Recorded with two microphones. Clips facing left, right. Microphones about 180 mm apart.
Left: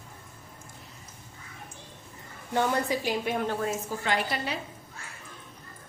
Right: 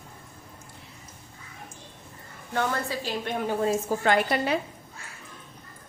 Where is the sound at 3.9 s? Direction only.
50° right (ahead or behind).